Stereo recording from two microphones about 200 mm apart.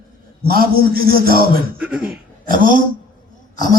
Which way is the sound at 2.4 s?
45° right (ahead or behind).